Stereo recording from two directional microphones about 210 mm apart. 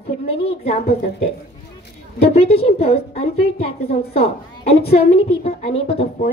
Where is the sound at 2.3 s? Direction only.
30° left (ahead or behind).